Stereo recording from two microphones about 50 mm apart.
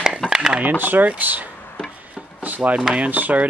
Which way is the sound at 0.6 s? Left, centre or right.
Right.